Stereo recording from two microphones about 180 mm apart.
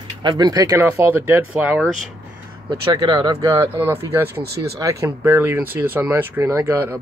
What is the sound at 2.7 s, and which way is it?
Speech, 25° right (ahead or behind).